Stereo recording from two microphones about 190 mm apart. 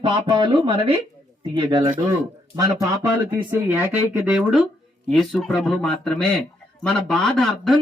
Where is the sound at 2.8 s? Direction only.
10° right (ahead or behind).